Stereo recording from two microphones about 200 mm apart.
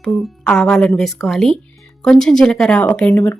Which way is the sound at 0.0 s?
5° left (ahead or behind).